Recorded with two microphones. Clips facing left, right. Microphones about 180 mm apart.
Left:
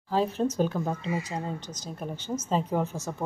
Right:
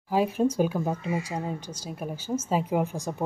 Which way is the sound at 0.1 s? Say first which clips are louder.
Right 2 dB; 10° right (ahead or behind).